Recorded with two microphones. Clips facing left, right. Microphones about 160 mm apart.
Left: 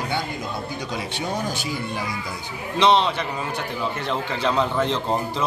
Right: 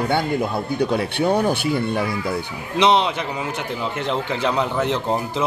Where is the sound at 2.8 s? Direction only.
15° right (ahead or behind).